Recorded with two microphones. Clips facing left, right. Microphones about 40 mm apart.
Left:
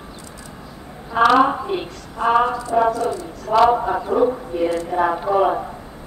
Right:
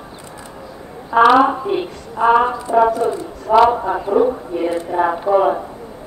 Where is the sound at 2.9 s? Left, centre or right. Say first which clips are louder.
Right 3 dB; right.